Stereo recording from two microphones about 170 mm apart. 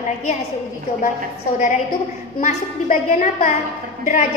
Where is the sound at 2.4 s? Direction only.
45° left (ahead or behind).